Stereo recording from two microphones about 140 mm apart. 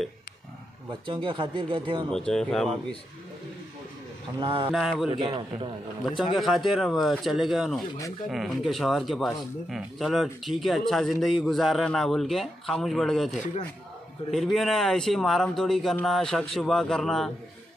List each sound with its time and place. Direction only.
1.0 s speech: 35° right (ahead or behind)
2.1 s speech: 5° left (ahead or behind)
4.4 s speech: 40° right (ahead or behind)
4.6 s speech: 5° right (ahead or behind)
5.1 s speech: 35° right (ahead or behind)
6.3 s speech: centre (ahead or behind)